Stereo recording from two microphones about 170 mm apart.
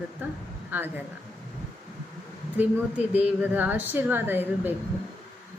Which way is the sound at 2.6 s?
10° right (ahead or behind).